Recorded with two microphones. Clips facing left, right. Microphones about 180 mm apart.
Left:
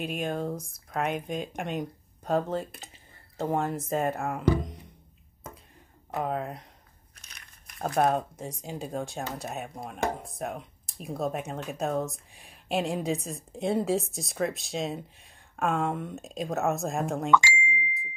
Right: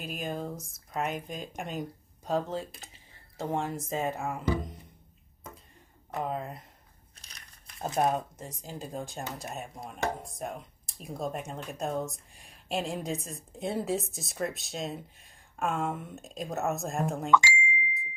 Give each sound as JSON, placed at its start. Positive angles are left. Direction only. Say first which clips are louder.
{"t": 0.0, "sound": "speech", "louder": "left 5 dB", "side_deg": 0}
{"t": 3.6, "sound": "speech", "louder": "left 4 dB", "side_deg": 60}
{"t": 4.0, "sound": "speech", "louder": "left 3 dB", "side_deg": 0}
{"t": 6.1, "sound": "speech", "louder": "left 3 dB", "side_deg": 0}
{"t": 7.2, "sound": "crushing", "louder": "left 1 dB", "side_deg": -35}
{"t": 7.8, "sound": "speech", "louder": "left 3 dB", "side_deg": 55}
{"t": 8.2, "sound": "speech", "louder": "left 5 dB", "side_deg": 15}
{"t": 8.6, "sound": "speech", "louder": "left 4 dB", "side_deg": 0}
{"t": 17.3, "sound": "speech", "louder": "left 1 dB", "side_deg": 60}
{"t": 17.6, "sound": "a sound", "louder": "even", "side_deg": 0}